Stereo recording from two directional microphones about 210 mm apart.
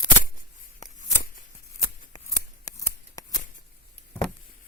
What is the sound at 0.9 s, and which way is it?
Shuffling cards, 40° left (ahead or behind).